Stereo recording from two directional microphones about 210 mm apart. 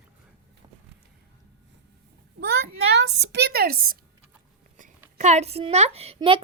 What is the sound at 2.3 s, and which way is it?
A child's voice, 55° right (ahead or behind).